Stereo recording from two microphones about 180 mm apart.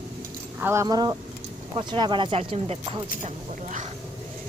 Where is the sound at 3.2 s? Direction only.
45° right (ahead or behind).